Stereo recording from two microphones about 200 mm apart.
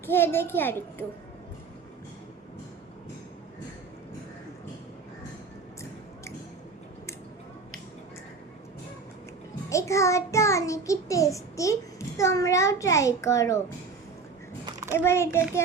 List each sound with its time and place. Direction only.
0.0 s a child's voice: 10° left (ahead or behind)
9.6 s a child's voice: 15° left (ahead or behind)
14.7 s a sound: 15° right (ahead or behind)
14.9 s a child's voice: 15° left (ahead or behind)